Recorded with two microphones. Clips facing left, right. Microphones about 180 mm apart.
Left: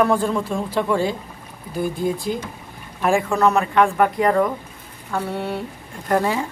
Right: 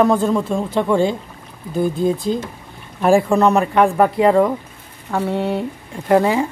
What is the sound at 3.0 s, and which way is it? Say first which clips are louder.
Speech: right 5 dB; 35° right (ahead or behind).